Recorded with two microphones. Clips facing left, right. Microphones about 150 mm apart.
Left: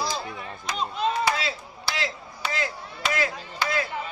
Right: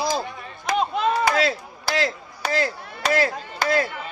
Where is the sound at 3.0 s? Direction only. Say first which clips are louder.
Right 6 dB; 40° right (ahead or behind).